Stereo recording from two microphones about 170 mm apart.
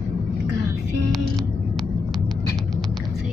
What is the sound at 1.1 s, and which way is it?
Vehicle, centre (ahead or behind).